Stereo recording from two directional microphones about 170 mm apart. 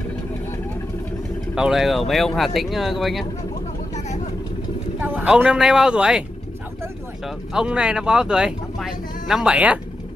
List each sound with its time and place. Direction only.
1.5 s speech: 5° right (ahead or behind)
5.2 s speech: 5° right (ahead or behind)
7.2 s speech: 5° right (ahead or behind)